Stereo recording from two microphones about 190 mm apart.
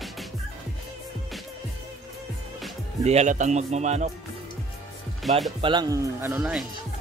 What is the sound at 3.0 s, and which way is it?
A man's voice, 35° right (ahead or behind).